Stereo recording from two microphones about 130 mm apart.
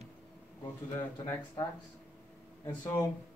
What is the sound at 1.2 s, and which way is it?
Speech, 25° left (ahead or behind).